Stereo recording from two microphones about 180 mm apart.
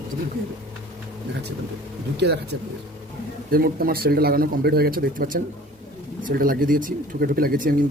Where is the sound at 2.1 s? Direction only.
65° right (ahead or behind).